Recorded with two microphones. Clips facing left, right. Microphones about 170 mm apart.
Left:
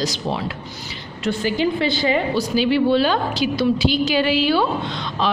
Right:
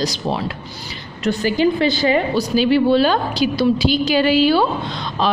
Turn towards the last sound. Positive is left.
turn(degrees=-40)  # may be behind; listen again after turning